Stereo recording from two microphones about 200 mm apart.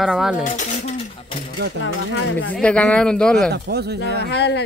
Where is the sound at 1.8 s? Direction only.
75° left (ahead or behind).